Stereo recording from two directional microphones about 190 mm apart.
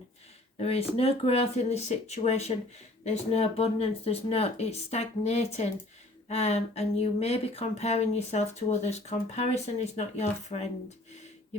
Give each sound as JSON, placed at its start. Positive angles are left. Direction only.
{"t": 0.6, "sound": "speech", "side_deg": 30}